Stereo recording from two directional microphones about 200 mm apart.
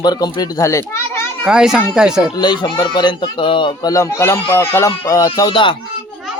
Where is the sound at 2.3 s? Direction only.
20° left (ahead or behind).